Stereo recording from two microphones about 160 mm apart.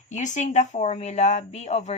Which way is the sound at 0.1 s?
50° left (ahead or behind).